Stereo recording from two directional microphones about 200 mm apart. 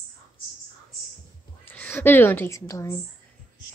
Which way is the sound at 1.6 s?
10° left (ahead or behind).